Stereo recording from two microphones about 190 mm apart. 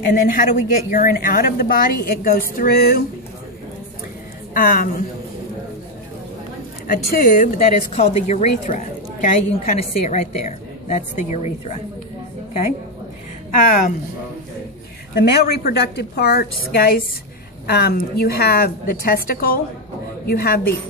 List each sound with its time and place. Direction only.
0.0 s a woman's voice: 50° left (ahead or behind)
4.6 s a woman's voice: 50° left (ahead or behind)
6.9 s speech: 50° left (ahead or behind)
15.1 s a woman's voice: 55° left (ahead or behind)